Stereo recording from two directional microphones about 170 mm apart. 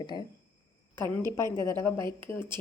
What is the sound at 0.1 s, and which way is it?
Speech, 25° left (ahead or behind).